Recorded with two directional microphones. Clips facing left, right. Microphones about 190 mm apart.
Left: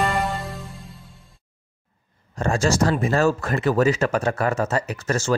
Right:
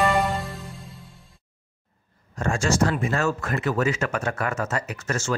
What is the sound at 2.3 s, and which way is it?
Speech, 35° left (ahead or behind).